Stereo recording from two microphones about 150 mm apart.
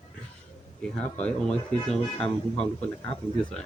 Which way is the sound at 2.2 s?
40° left (ahead or behind).